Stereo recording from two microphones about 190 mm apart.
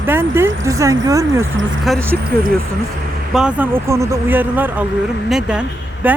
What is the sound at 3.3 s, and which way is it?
Speech, 5° right (ahead or behind).